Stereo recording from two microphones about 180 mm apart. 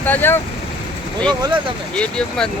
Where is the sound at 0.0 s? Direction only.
10° left (ahead or behind).